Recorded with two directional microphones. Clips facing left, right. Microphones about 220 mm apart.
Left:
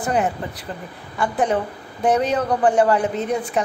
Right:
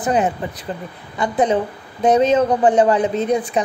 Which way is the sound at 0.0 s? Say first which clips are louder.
Right 3 dB; 20° right (ahead or behind).